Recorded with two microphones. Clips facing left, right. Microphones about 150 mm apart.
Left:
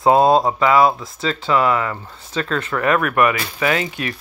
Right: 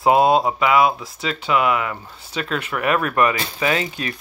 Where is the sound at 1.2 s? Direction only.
10° right (ahead or behind).